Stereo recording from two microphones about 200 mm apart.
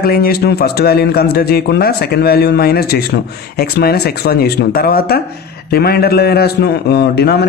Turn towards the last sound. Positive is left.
turn(degrees=55)  # may be behind; listen again after turning